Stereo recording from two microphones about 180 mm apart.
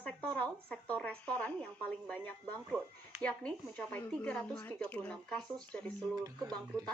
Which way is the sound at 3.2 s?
5° left (ahead or behind).